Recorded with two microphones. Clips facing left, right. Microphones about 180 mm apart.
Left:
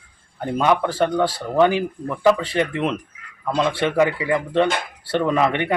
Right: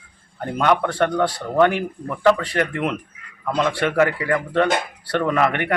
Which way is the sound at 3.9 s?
15° left (ahead or behind).